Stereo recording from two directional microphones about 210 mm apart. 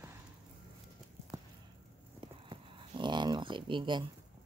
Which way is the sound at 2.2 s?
20° right (ahead or behind).